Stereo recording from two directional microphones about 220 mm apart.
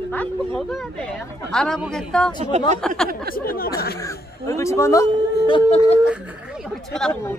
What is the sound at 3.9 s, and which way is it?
Speech, 15° left (ahead or behind).